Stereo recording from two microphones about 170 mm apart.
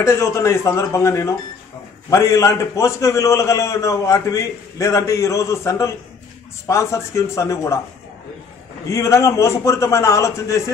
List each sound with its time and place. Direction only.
0.0 s a man's voice: 15° left (ahead or behind)
8.8 s a man's voice: 15° left (ahead or behind)